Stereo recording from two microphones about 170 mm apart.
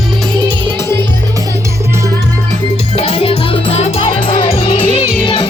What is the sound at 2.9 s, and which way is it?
Music, 35° left (ahead or behind).